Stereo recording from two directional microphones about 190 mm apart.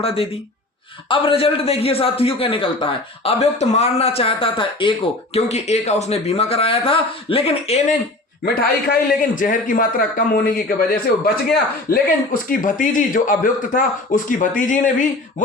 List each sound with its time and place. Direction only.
0.0 s a man's voice: 30° left (ahead or behind)
8.4 s a man's voice: 50° left (ahead or behind)
11.9 s a man's voice: 50° left (ahead or behind)